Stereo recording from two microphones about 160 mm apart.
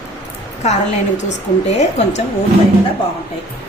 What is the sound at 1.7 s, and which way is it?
Speech, 45° left (ahead or behind).